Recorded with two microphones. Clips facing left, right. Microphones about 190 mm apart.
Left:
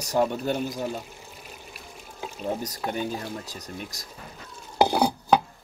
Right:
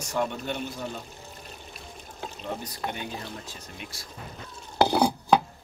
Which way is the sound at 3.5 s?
40° left (ahead or behind).